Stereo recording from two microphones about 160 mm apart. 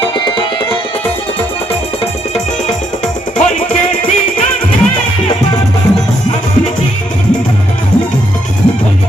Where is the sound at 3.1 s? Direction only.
55° left (ahead or behind).